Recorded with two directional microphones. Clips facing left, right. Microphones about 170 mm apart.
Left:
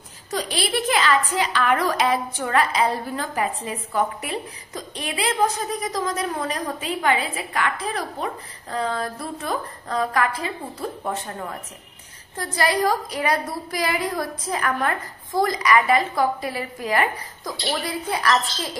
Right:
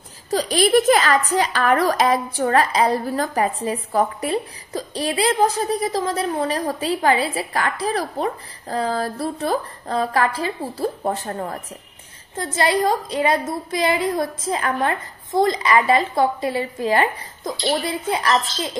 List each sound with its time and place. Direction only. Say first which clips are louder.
0.3 s a woman's voice: right 8 dB; 40° right (ahead or behind)
12.4 s a woman's voice: right 2 dB; 25° right (ahead or behind)